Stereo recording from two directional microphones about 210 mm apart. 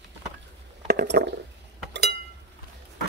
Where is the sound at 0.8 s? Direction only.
50° right (ahead or behind).